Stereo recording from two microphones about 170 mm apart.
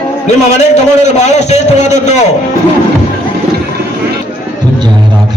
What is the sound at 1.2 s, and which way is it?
Speech, 40° left (ahead or behind).